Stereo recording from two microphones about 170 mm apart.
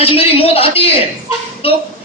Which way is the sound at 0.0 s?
35° left (ahead or behind).